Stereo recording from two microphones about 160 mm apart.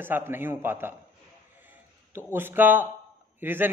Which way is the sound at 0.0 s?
15° right (ahead or behind).